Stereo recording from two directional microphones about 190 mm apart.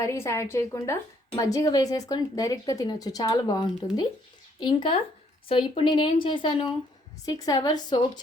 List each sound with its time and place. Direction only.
0.0 s a woman's voice: 15° left (ahead or behind)